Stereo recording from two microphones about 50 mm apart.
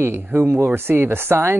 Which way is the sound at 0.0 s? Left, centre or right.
Right.